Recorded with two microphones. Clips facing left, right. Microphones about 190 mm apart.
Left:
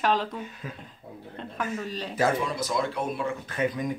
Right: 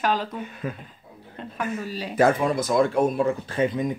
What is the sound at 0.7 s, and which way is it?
Speech, 60° right (ahead or behind).